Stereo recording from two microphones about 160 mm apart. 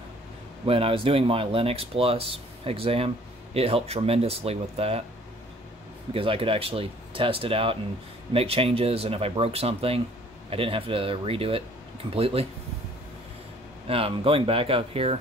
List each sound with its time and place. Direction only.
0.7 s speech: 35° right (ahead or behind)
6.1 s speech: 35° right (ahead or behind)
13.8 s speech: 35° right (ahead or behind)